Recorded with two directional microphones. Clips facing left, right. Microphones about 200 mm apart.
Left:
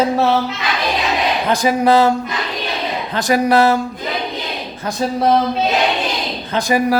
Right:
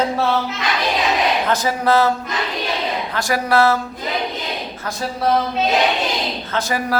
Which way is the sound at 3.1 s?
20° left (ahead or behind).